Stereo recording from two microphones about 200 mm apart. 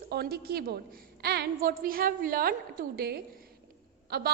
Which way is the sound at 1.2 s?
55° right (ahead or behind).